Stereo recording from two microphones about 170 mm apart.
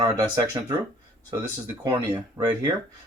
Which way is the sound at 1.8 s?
20° right (ahead or behind).